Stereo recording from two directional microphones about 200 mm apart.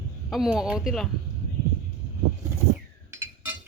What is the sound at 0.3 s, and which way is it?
Speech, centre (ahead or behind).